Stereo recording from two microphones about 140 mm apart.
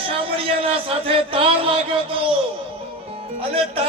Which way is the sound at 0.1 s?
40° right (ahead or behind).